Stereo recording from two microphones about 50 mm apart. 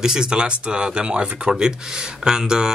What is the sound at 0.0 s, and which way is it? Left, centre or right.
Speech, centre.